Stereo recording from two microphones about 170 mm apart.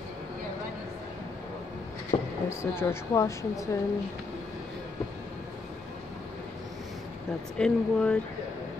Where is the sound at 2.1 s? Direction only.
35° left (ahead or behind).